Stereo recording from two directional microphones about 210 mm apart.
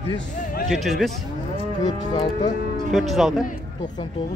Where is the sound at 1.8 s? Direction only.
20° left (ahead or behind).